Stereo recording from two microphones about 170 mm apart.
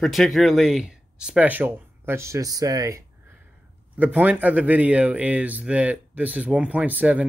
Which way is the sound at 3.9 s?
10° right (ahead or behind).